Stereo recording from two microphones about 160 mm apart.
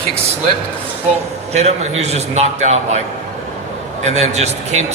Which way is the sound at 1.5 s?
45° right (ahead or behind).